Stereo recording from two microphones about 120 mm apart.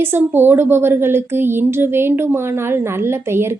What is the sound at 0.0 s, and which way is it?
A woman's voice, 20° right (ahead or behind).